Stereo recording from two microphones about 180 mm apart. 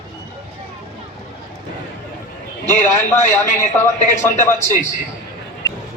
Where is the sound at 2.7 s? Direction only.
40° left (ahead or behind).